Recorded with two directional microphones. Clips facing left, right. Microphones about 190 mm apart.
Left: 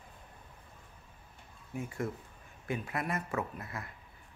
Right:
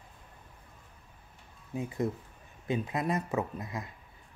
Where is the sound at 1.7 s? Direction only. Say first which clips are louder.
Right 4 dB; 20° right (ahead or behind).